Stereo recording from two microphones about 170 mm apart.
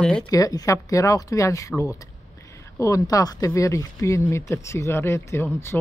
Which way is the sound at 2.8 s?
20° left (ahead or behind).